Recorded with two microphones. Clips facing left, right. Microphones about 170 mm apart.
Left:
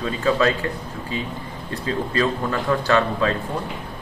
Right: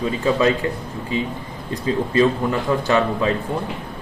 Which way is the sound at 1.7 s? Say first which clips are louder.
Right 4 dB; 20° right (ahead or behind).